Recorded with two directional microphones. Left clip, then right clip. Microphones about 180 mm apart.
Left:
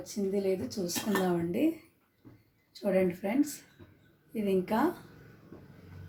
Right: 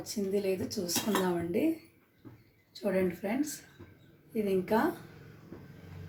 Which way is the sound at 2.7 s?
25° left (ahead or behind).